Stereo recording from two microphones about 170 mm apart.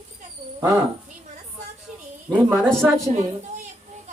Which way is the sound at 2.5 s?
Centre (ahead or behind).